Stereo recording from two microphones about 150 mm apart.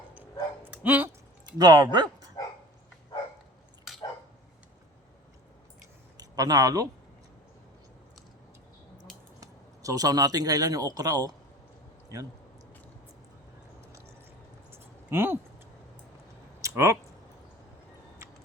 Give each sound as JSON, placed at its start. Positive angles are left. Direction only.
{"t": 0.1, "sound": "dog", "side_deg": -10}
{"t": 1.5, "sound": "speech", "side_deg": -25}
{"t": 6.1, "sound": "speech", "side_deg": -25}
{"t": 9.4, "sound": "speech", "side_deg": -25}
{"t": 14.7, "sound": "a sound", "side_deg": -15}
{"t": 16.6, "sound": "a sound", "side_deg": -20}